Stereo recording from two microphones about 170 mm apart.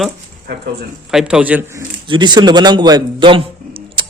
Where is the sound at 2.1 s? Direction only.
25° right (ahead or behind).